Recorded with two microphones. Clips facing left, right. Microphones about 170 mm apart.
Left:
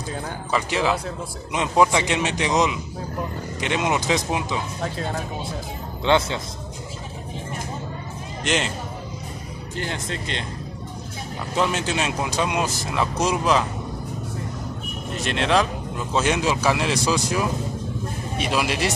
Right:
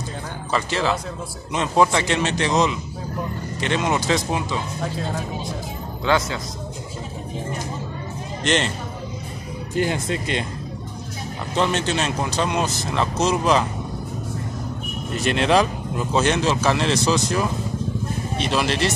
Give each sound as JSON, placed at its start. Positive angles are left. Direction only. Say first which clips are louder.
{"t": 0.5, "sound": "speech", "louder": "even", "side_deg": 15}
{"t": 6.0, "sound": "a man's voice", "louder": "left 1 dB", "side_deg": 25}
{"t": 8.5, "sound": "speech", "louder": "right 3 dB", "side_deg": 5}
{"t": 9.8, "sound": "speech", "louder": "right 7 dB", "side_deg": -10}
{"t": 11.5, "sound": "speech", "louder": "right 2 dB", "side_deg": 5}
{"t": 15.2, "sound": "speech", "louder": "right 3 dB", "side_deg": 0}